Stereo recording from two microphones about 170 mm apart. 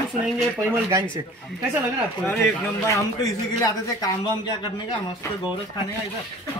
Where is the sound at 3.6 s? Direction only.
20° left (ahead or behind).